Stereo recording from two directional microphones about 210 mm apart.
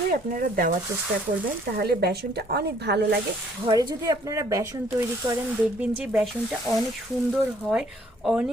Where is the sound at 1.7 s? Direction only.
50° right (ahead or behind).